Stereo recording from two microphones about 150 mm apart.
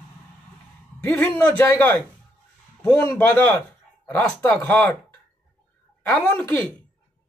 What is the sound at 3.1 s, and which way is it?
Speech, 10° left (ahead or behind).